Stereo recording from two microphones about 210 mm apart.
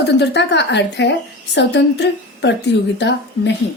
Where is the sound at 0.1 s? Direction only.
55° left (ahead or behind).